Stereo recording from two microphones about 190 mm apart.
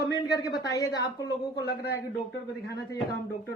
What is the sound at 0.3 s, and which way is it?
Speech, 20° left (ahead or behind).